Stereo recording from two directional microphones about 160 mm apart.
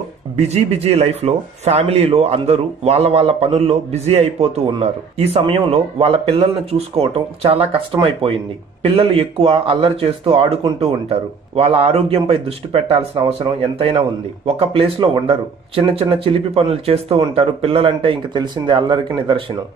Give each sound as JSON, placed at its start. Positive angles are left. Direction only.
{"t": 0.4, "sound": "speech", "side_deg": -40}